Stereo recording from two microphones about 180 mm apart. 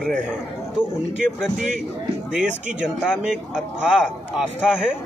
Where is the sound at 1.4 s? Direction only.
5° right (ahead or behind).